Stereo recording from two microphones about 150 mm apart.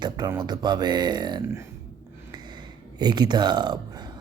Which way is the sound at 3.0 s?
30° right (ahead or behind).